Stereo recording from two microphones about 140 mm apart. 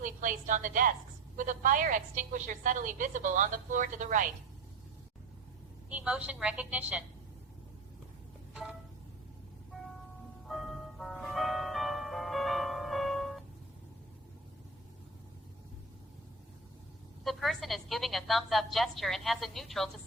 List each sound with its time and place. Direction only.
0.0 s a woman's voice: 65° right (ahead or behind)
5.9 s a woman's voice: 10° right (ahead or behind)
10.4 s ice cream truck: centre (ahead or behind)
17.2 s a woman's voice: centre (ahead or behind)